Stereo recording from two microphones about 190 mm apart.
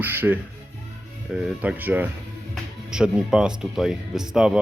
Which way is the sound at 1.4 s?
5° right (ahead or behind).